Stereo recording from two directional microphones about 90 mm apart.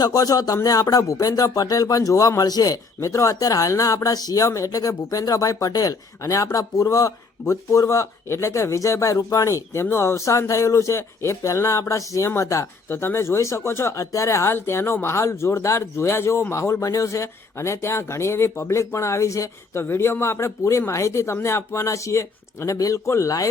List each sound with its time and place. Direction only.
0.0 s speech: 45° left (ahead or behind)
3.0 s speech: 35° left (ahead or behind)